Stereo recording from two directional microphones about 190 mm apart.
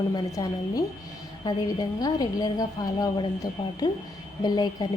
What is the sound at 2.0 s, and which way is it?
A woman's voice, 20° left (ahead or behind).